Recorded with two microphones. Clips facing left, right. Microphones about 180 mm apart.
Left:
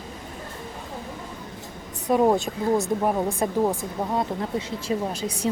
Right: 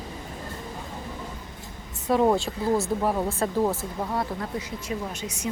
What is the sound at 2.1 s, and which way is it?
A woman's voice, 15° left (ahead or behind).